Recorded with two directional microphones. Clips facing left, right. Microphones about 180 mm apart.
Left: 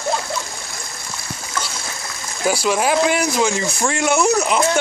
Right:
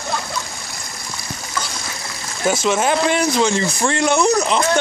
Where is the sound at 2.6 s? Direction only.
5° left (ahead or behind).